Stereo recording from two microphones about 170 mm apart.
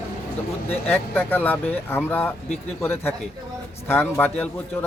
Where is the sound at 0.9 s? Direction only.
10° left (ahead or behind).